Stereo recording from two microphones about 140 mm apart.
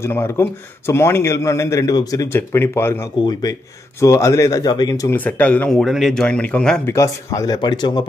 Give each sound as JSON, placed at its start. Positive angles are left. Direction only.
{"t": 0.0, "sound": "a man's voice", "side_deg": 15}
{"t": 3.2, "sound": "a man's voice", "side_deg": 30}
{"t": 5.1, "sound": "speech", "side_deg": 10}
{"t": 6.9, "sound": "a man's voice", "side_deg": 20}